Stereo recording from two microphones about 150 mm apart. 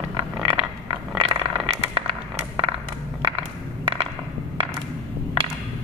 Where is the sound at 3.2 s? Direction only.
35° right (ahead or behind).